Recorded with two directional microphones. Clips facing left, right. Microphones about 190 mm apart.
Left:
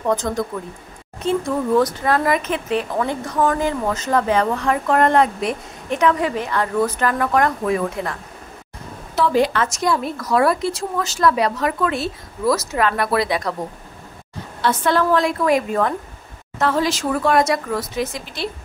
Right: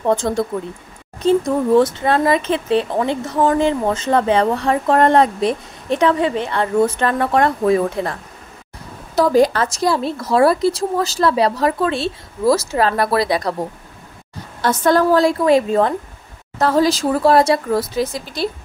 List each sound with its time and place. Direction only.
0.0 s speech: 30° right (ahead or behind)
14.6 s speech: 40° right (ahead or behind)